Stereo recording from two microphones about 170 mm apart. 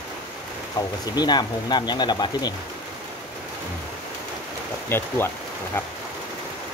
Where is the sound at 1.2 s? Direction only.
25° left (ahead or behind).